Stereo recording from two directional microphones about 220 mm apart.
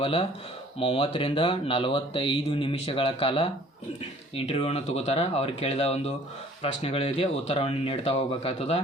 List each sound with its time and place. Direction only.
0.0 s speech: 25° left (ahead or behind)